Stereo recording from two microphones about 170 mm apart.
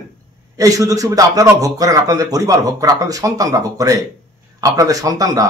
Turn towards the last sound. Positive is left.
turn(degrees=-20)  # may be behind; listen again after turning